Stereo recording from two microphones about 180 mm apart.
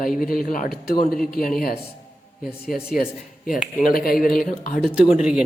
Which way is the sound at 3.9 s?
55° left (ahead or behind).